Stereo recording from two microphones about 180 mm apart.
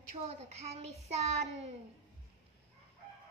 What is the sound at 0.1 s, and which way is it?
Child singing, 35° right (ahead or behind).